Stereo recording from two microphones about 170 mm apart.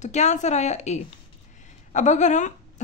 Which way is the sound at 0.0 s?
45° left (ahead or behind).